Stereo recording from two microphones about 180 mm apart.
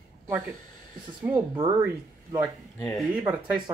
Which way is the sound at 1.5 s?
15° right (ahead or behind).